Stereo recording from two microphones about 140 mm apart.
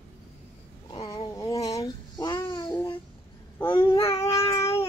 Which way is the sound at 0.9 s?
40° left (ahead or behind).